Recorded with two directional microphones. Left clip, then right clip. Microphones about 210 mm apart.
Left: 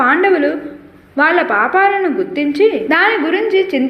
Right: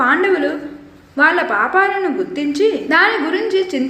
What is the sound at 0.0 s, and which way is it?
A woman's voice, 10° left (ahead or behind).